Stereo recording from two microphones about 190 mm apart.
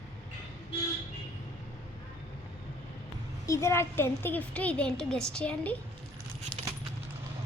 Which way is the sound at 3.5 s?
15° left (ahead or behind).